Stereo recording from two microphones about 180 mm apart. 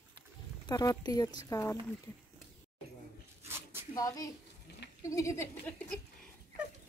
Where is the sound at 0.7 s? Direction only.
20° left (ahead or behind).